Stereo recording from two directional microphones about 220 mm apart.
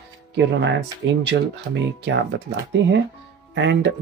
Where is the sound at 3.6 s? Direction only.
55° right (ahead or behind).